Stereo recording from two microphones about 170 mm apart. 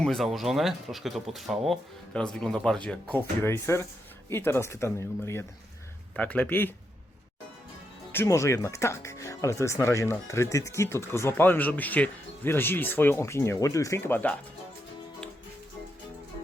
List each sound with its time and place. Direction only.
0.0 s speech: centre (ahead or behind)
8.1 s speech: 15° left (ahead or behind)